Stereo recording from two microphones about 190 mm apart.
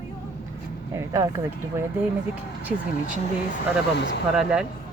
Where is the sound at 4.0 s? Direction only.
60° left (ahead or behind).